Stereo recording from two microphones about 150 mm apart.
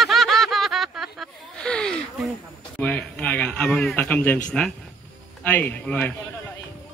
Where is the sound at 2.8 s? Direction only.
10° left (ahead or behind).